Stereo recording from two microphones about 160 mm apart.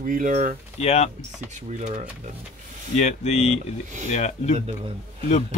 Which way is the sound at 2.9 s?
45° left (ahead or behind).